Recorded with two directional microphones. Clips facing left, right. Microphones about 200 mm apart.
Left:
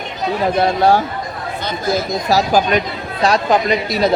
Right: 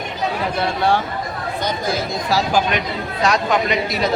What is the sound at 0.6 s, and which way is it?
Speech, 40° left (ahead or behind).